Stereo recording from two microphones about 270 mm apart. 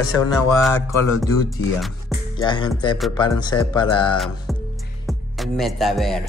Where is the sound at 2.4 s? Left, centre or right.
Centre.